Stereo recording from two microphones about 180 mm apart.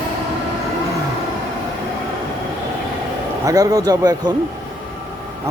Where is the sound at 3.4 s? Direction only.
20° right (ahead or behind).